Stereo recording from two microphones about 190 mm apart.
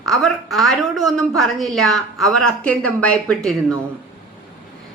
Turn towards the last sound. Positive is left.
turn(degrees=5)  # may be behind; listen again after turning